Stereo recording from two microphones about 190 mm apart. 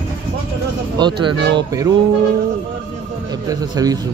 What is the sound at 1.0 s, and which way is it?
Speech, 25° right (ahead or behind).